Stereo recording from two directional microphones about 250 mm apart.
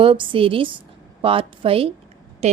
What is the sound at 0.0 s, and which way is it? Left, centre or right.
A woman's voice, centre.